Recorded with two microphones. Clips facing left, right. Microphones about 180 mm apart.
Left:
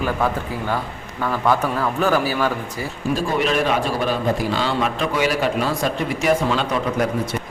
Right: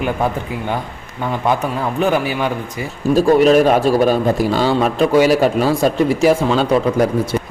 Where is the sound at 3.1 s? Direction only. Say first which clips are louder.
Right 11 dB; 40° right (ahead or behind).